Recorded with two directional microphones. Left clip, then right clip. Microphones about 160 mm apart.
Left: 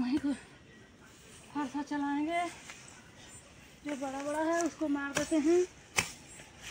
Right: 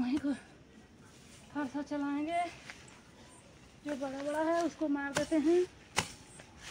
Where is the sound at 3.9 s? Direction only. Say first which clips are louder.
Left 1 dB; 5° right (ahead or behind).